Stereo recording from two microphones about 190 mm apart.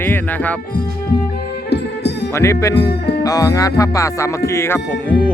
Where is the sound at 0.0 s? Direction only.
10° left (ahead or behind).